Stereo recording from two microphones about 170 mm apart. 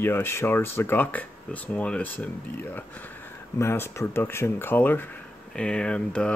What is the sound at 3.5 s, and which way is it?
Speech, 15° left (ahead or behind).